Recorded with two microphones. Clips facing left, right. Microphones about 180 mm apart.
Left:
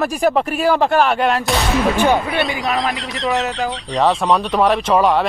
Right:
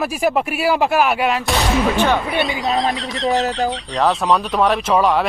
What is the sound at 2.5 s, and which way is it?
Speech, 25° right (ahead or behind).